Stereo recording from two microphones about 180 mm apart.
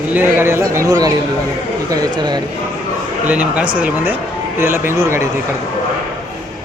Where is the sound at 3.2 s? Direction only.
10° right (ahead or behind).